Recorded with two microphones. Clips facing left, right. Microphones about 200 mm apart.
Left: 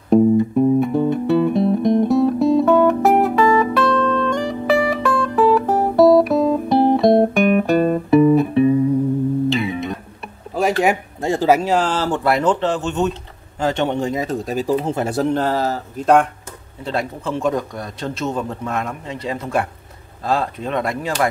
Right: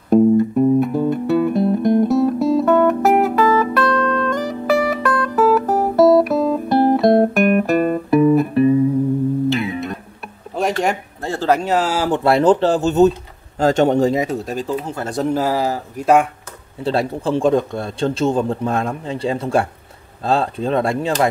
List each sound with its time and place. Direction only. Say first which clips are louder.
0.1 s music: right 1 dB; centre (ahead or behind)
9.5 s guitar: even; centre (ahead or behind)
10.8 s a sound: left 2 dB; 10° left (ahead or behind); by 12.1 s 5° right (ahead or behind)
12.1 s speech: right 7 dB; 25° right (ahead or behind)
14.2 s speech: even; centre (ahead or behind)
14.8 s a man's voice: left 5 dB; 25° left (ahead or behind)
15.2 s speech: right 3 dB; 5° right (ahead or behind)
16.8 s a man's voice: right 5 dB; 30° right (ahead or behind)